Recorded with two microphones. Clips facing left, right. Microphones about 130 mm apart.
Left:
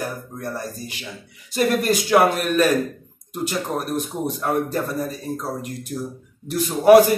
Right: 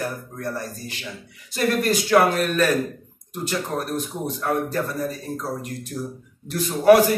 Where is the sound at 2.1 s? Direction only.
15° left (ahead or behind).